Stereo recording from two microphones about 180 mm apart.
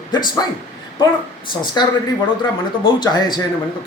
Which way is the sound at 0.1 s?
25° left (ahead or behind).